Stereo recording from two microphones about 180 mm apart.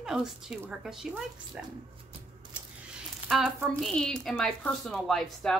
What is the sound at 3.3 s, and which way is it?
Speech, centre (ahead or behind).